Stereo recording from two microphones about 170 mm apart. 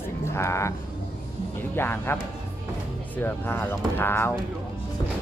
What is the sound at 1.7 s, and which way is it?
Speech, 15° left (ahead or behind).